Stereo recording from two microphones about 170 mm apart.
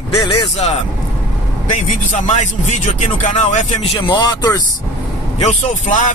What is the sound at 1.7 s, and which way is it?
Speech, 45° left (ahead or behind).